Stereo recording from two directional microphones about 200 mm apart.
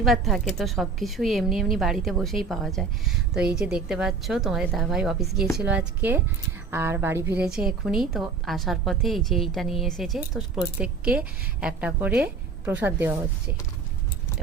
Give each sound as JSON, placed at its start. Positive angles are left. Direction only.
{"t": 0.0, "sound": "a woman's voice", "side_deg": 0}